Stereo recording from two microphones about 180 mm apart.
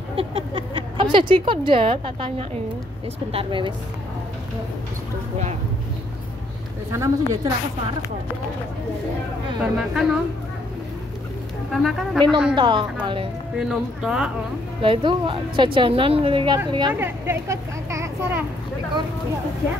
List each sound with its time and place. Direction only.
0.1 s a woman's voice: 30° right (ahead or behind)
6.9 s speech: 15° right (ahead or behind)
9.6 s speech: 5° right (ahead or behind)
11.7 s speech: centre (ahead or behind)
12.5 s a woman's voice: 25° right (ahead or behind)
13.6 s speech: 5° right (ahead or behind)
14.8 s a woman's voice: 30° right (ahead or behind)
16.9 s speech: 15° right (ahead or behind)